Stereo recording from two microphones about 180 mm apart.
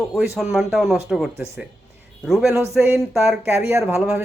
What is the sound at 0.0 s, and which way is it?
Speech, centre (ahead or behind).